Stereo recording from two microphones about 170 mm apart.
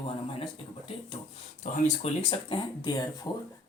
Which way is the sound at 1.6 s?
45° left (ahead or behind).